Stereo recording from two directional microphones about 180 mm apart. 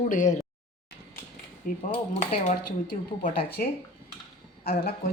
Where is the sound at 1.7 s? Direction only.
55° left (ahead or behind).